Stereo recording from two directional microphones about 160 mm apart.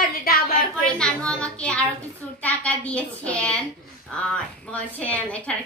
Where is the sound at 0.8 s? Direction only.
5° left (ahead or behind).